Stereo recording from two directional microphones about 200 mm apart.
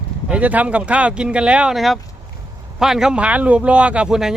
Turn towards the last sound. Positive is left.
turn(degrees=-5)  # may be behind; listen again after turning